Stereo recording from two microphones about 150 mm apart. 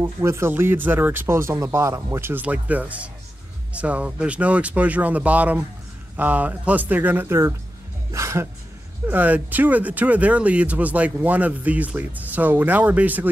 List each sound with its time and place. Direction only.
0.0 s speech: 15° right (ahead or behind)
8.1 s a sound: 20° right (ahead or behind)
9.0 s speech: 10° right (ahead or behind)